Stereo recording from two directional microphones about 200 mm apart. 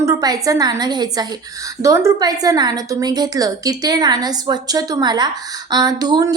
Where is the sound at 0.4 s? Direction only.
15° right (ahead or behind).